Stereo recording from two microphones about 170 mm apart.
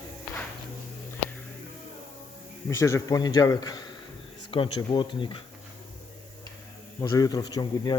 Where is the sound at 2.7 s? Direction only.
15° left (ahead or behind).